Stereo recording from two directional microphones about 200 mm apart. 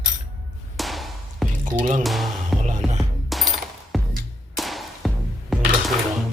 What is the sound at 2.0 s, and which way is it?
Speech, centre (ahead or behind).